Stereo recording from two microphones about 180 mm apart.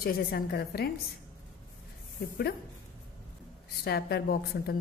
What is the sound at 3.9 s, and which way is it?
Speech, 65° left (ahead or behind).